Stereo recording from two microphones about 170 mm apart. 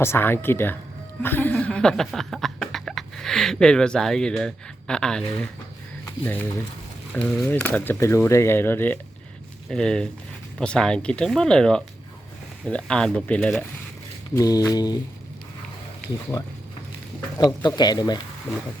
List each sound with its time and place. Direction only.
0.0 s speech: 15° left (ahead or behind)
1.2 s chuckle: 10° left (ahead or behind)
6.1 s speech: 10° left (ahead or behind)
14.3 s speech: 20° left (ahead or behind)
17.3 s speech: 20° left (ahead or behind)